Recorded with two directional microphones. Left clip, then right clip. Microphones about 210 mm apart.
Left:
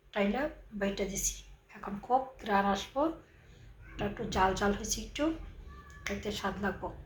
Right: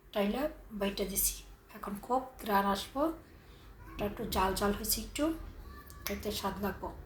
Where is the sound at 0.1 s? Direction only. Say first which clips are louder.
Left 1 dB; 10° right (ahead or behind).